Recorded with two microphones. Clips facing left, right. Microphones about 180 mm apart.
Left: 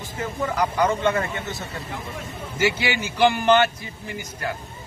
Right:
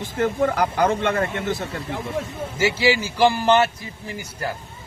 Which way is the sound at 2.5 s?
30° right (ahead or behind).